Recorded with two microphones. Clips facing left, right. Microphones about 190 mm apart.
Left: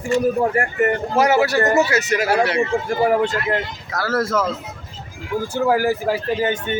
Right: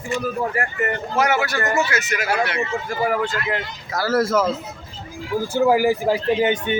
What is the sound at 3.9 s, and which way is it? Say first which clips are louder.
Speech: right 2 dB; centre (ahead or behind).